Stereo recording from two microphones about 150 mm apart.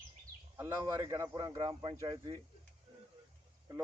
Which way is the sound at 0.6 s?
15° right (ahead or behind).